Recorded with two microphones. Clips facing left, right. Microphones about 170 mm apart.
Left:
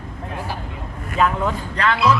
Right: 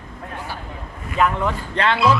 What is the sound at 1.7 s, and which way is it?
Speech, 25° right (ahead or behind).